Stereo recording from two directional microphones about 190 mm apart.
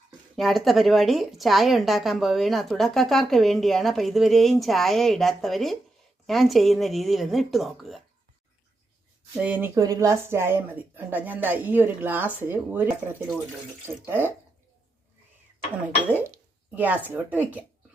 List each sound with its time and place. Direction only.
0.3 s a woman's voice: centre (ahead or behind)
9.4 s speech: 10° right (ahead or behind)
16.7 s speech: 10° right (ahead or behind)